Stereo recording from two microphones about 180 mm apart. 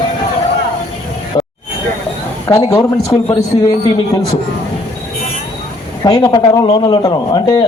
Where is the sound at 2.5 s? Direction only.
20° left (ahead or behind).